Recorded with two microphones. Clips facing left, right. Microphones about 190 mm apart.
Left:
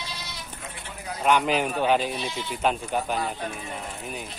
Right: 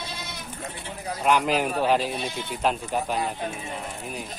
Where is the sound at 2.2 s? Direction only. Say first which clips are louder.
Even; 55° right (ahead or behind).